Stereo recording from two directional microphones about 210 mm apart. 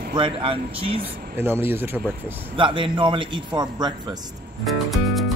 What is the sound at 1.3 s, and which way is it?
A man's voice, 10° right (ahead or behind).